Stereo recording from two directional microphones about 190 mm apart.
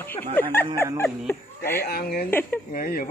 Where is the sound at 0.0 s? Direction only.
10° left (ahead or behind).